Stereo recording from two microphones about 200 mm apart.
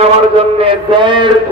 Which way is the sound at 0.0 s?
30° right (ahead or behind).